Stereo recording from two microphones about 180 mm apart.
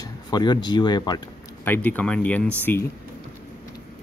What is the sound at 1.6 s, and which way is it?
Speech, 10° left (ahead or behind).